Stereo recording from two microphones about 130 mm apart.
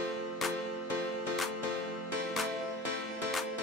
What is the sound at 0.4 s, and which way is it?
Music, centre (ahead or behind).